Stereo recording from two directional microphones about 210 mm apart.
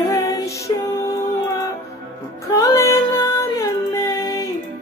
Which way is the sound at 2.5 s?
15° left (ahead or behind).